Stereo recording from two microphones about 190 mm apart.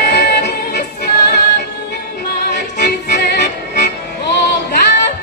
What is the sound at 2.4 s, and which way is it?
Music, 55° left (ahead or behind).